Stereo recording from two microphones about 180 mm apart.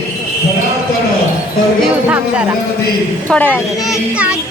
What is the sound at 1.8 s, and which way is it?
Music, 10° right (ahead or behind).